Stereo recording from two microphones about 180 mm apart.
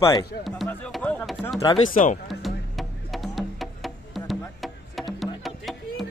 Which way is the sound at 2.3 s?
Centre (ahead or behind).